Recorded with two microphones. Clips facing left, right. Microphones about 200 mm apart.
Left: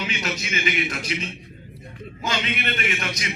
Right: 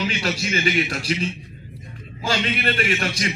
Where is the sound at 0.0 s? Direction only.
35° right (ahead or behind).